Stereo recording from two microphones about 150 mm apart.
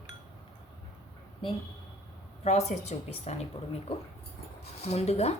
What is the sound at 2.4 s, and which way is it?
Speech, 50° left (ahead or behind).